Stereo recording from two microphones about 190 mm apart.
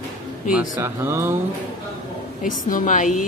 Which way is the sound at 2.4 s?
45° left (ahead or behind).